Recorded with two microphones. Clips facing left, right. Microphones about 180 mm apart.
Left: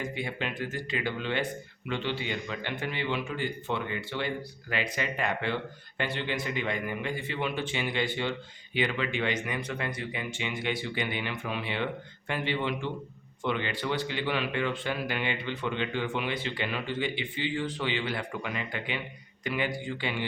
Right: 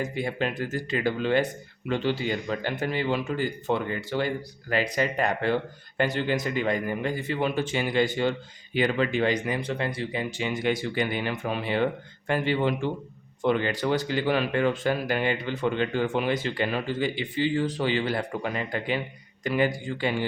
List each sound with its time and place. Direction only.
0.0 s a man's voice: 40° right (ahead or behind)